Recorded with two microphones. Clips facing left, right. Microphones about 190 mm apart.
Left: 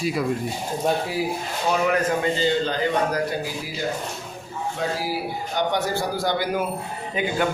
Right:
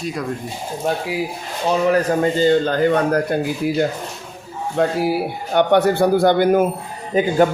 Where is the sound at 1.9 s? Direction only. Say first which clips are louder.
Right 5 dB; 45° right (ahead or behind).